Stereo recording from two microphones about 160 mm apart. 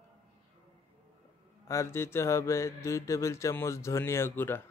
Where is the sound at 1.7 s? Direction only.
15° left (ahead or behind).